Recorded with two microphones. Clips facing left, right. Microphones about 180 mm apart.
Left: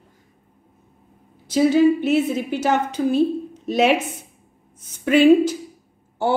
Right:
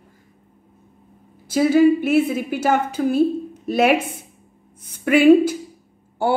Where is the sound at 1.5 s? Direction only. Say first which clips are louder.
Right 1 dB; 10° right (ahead or behind).